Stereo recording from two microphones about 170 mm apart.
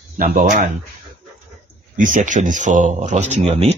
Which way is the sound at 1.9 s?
50° right (ahead or behind).